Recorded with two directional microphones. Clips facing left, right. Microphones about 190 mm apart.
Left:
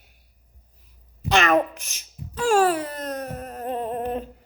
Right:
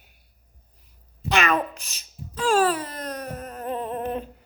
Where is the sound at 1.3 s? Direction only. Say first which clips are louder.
Left 4 dB; 45° left (ahead or behind).